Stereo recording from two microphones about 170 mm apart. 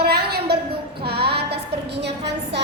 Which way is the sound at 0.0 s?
70° right (ahead or behind).